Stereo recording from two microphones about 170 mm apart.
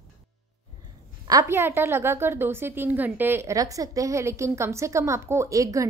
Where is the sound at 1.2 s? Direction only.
20° right (ahead or behind).